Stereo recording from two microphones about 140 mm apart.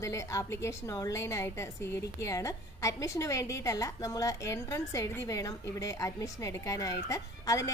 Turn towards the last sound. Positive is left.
turn(degrees=25)  # may be behind; listen again after turning